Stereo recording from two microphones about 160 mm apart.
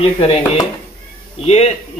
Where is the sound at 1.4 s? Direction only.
40° left (ahead or behind).